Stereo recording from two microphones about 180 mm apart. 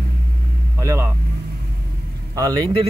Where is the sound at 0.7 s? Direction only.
15° right (ahead or behind).